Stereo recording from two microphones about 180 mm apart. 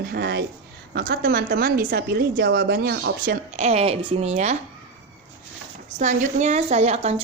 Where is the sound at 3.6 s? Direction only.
35° right (ahead or behind).